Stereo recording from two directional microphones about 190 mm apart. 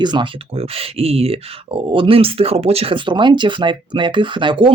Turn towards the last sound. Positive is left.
turn(degrees=-25)  # may be behind; listen again after turning